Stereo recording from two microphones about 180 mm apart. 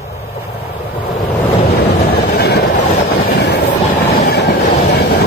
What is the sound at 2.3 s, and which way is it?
Train, 65° left (ahead or behind).